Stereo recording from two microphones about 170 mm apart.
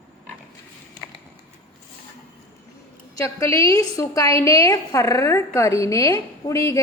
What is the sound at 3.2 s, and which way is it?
A woman's voice, 20° left (ahead or behind).